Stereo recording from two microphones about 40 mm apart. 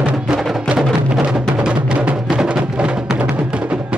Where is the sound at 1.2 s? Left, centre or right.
Right.